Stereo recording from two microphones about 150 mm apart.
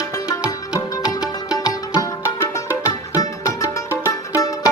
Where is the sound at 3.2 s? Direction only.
20° left (ahead or behind).